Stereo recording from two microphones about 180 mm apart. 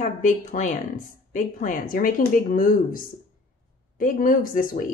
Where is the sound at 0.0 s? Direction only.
45° left (ahead or behind).